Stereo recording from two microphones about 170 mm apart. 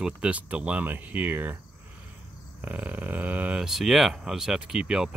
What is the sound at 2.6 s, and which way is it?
Speech, 10° right (ahead or behind).